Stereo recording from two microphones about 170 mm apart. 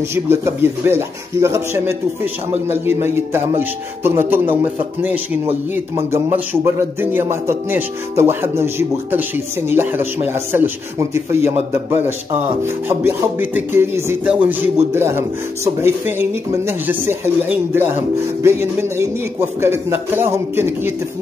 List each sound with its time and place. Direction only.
0.1 s a man's voice: 15° right (ahead or behind)
5.9 s a man's voice: 15° right (ahead or behind)
11.9 s speech: 35° right (ahead or behind)
12.8 s a man's voice: 10° right (ahead or behind)